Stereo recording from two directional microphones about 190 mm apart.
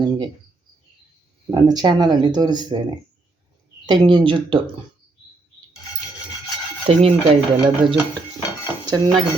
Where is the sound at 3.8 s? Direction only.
25° right (ahead or behind).